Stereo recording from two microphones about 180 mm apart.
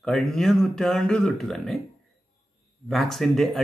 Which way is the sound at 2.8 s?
Centre (ahead or behind).